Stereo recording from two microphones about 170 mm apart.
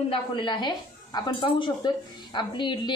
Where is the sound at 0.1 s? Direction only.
30° left (ahead or behind).